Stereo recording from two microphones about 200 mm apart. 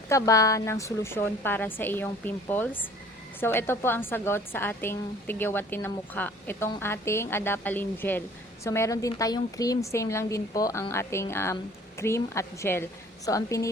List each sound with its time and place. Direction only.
0.1 s a woman's voice: 15° left (ahead or behind)